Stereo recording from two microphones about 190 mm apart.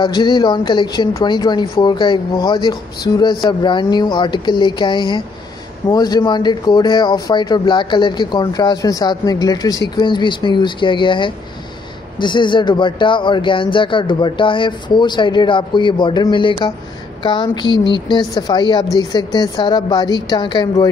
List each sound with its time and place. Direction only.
0.0 s speech: 25° left (ahead or behind)